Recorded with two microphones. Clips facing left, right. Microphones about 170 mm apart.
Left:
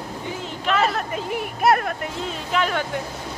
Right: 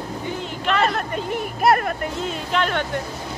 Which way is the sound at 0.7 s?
Centre (ahead or behind).